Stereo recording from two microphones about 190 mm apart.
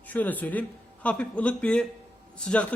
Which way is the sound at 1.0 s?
5° left (ahead or behind).